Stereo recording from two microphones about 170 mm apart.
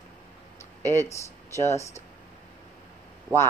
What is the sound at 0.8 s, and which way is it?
Speech, 15° left (ahead or behind).